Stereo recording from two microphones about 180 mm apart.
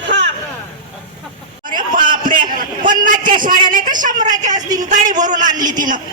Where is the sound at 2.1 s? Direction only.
50° right (ahead or behind).